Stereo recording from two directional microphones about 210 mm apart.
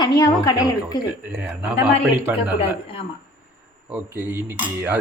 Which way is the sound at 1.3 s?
5° right (ahead or behind).